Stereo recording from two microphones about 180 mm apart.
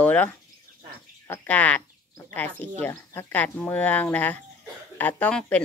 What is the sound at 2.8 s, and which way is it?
Speech, 10° left (ahead or behind).